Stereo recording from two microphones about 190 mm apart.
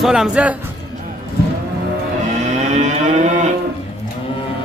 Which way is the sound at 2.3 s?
35° right (ahead or behind).